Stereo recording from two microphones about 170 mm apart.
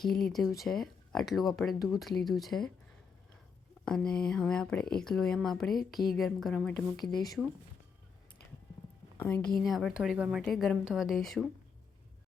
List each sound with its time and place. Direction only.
0.0 s speech: centre (ahead or behind)
3.8 s speech: 5° left (ahead or behind)
7.0 s speech: 25° left (ahead or behind)
9.1 s speech: 10° left (ahead or behind)
9.6 s speech: centre (ahead or behind)